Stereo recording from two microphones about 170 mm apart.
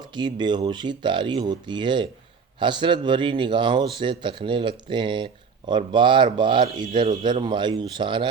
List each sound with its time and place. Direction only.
0.1 s speech: 25° right (ahead or behind)